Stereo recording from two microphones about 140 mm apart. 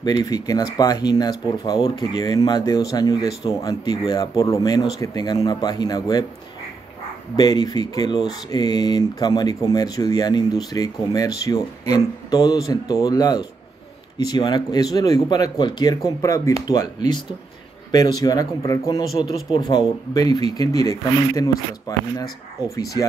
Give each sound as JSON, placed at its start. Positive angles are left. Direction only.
{"t": 0.2, "sound": "speech", "side_deg": 25}
{"t": 7.3, "sound": "speech", "side_deg": 30}